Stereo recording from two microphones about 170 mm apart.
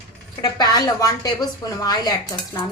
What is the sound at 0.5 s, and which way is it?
A woman's voice, 20° left (ahead or behind).